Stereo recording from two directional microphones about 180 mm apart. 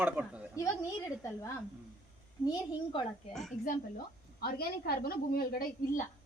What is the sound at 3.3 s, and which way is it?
Speech, centre (ahead or behind).